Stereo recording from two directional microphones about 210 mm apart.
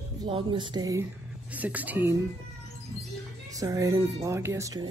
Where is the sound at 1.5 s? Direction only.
5° right (ahead or behind).